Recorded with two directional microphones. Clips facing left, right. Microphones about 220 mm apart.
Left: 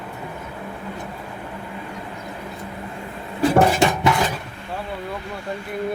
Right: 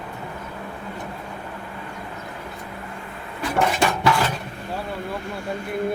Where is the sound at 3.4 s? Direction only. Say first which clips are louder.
Left 6 dB; 30° left (ahead or behind).